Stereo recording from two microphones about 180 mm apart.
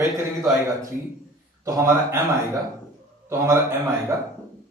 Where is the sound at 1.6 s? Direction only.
15° right (ahead or behind).